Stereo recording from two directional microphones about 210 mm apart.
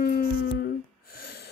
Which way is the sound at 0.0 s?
50° left (ahead or behind).